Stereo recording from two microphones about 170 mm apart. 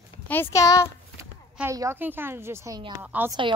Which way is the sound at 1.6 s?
15° right (ahead or behind).